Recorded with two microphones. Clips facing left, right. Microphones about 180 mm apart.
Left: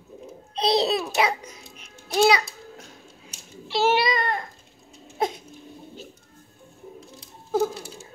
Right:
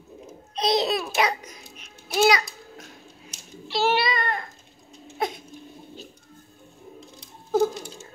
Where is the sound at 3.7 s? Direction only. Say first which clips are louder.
Left 2 dB; 20° left (ahead or behind).